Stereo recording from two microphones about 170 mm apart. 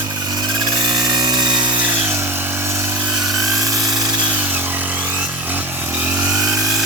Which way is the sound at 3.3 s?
20° right (ahead or behind).